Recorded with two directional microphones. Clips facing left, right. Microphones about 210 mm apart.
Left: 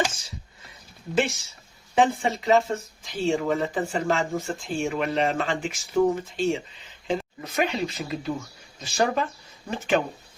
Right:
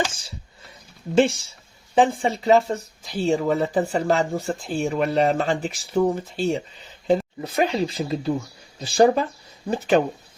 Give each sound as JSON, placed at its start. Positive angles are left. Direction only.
{"t": 1.1, "sound": "speech", "side_deg": -30}